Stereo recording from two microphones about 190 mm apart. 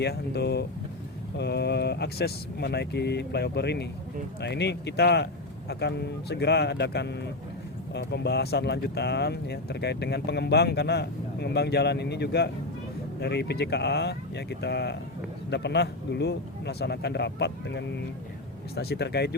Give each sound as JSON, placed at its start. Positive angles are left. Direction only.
{"t": 0.0, "sound": "speech", "side_deg": 60}